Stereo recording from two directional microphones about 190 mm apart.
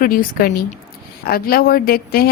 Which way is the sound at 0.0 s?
50° left (ahead or behind).